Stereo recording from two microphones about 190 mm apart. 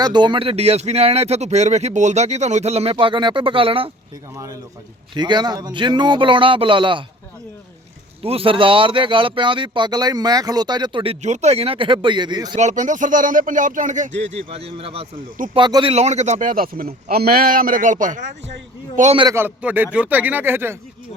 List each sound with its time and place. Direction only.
0.0 s speech: 25° right (ahead or behind)
5.1 s speech: 25° right (ahead or behind)
8.2 s speech: 30° right (ahead or behind)
12.5 s speech: 40° right (ahead or behind)
19.2 s speech: 15° right (ahead or behind)